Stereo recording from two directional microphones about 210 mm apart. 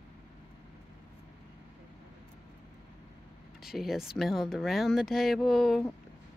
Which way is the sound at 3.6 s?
Centre (ahead or behind).